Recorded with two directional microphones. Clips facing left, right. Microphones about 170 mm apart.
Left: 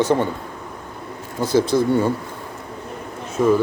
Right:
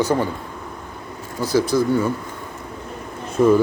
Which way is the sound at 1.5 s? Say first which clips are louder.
Left 1 dB; 25° left (ahead or behind).